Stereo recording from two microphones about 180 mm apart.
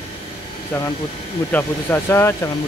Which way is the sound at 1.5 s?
10° left (ahead or behind).